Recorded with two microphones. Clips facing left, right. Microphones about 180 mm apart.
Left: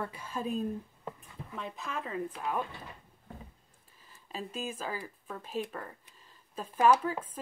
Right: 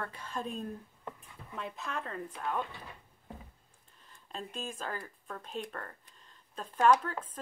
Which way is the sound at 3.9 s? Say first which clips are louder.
Left 2 dB; 5° left (ahead or behind).